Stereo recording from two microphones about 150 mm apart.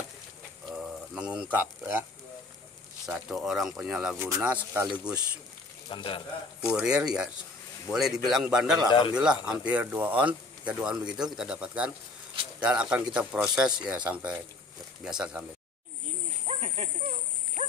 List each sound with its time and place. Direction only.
0.7 s a sound: 5° right (ahead or behind)
1.5 s speech: 10° right (ahead or behind)
3.1 s speech: 5° right (ahead or behind)
5.9 s speech: 35° left (ahead or behind)
6.6 s speech: 5° right (ahead or behind)
16.4 s a sound: 45° right (ahead or behind)
17.6 s dog: 55° right (ahead or behind)